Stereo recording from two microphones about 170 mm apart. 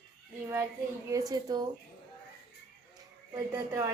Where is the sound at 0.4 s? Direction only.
15° right (ahead or behind).